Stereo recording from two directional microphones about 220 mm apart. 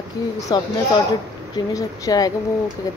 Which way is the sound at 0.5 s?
20° left (ahead or behind).